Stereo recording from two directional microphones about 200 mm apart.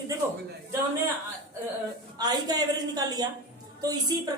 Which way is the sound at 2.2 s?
20° right (ahead or behind).